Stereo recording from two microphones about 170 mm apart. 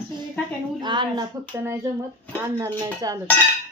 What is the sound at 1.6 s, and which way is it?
A woman's voice, 15° right (ahead or behind).